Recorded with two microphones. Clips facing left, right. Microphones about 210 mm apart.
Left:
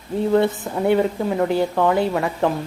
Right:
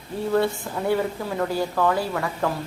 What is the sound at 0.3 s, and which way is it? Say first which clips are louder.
Speech: left 3 dB; 20° left (ahead or behind).